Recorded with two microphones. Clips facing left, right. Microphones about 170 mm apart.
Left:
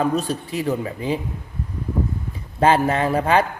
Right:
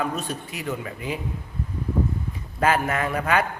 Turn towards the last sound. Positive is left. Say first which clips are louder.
# left 5 dB
turn(degrees=30)  # may be behind; listen again after turning